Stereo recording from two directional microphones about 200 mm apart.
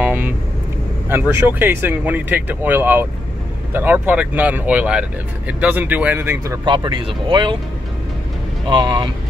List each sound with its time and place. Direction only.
0.0 s vehicle: 10° right (ahead or behind)
1.0 s speech: 10° right (ahead or behind)
8.6 s speech: 20° right (ahead or behind)